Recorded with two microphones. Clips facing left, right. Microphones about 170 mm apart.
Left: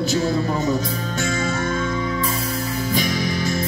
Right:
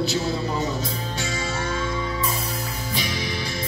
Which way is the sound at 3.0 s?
45° left (ahead or behind).